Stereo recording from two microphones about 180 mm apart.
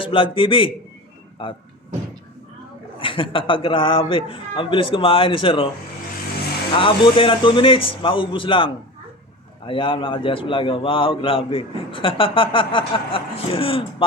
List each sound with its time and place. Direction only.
0.0 s a man's voice: 30° left (ahead or behind)
3.0 s a man's voice: 30° left (ahead or behind)
6.7 s a man's voice: 30° left (ahead or behind)